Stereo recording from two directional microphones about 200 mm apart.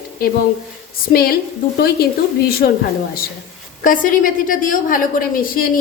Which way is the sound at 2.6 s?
45° left (ahead or behind).